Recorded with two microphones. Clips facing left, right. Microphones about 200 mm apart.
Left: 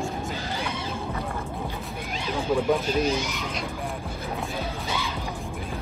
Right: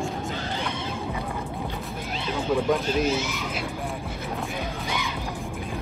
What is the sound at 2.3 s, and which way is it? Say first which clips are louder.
Speech: even; 10° left (ahead or behind).